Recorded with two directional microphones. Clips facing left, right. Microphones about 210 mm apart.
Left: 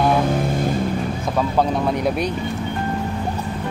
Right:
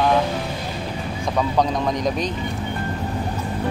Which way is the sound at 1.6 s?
10° left (ahead or behind).